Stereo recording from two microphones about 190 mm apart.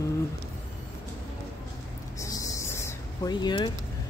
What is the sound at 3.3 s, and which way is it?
Speech, 25° left (ahead or behind).